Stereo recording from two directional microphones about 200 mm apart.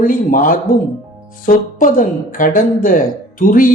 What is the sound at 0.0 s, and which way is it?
A woman's voice, 40° left (ahead or behind).